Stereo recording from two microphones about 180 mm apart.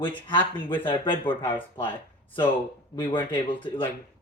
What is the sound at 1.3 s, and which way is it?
Speech, 10° left (ahead or behind).